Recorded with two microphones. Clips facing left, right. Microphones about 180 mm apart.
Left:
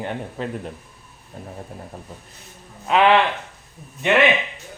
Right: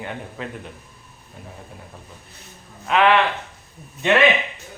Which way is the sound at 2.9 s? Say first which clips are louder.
Left 1 dB; 15° left (ahead or behind).